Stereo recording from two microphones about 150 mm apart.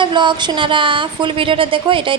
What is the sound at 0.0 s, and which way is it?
A woman's voice, 30° right (ahead or behind).